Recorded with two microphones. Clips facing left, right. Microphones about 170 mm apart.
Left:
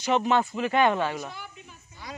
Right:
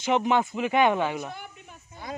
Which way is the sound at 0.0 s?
15° right (ahead or behind).